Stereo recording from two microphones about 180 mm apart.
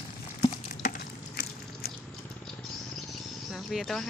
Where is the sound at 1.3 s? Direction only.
55° left (ahead or behind).